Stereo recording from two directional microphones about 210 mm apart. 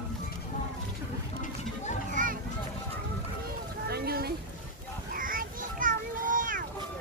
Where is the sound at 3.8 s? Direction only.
50° right (ahead or behind).